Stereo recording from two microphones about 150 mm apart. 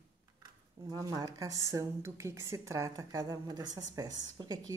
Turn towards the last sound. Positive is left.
turn(degrees=-25)  # may be behind; listen again after turning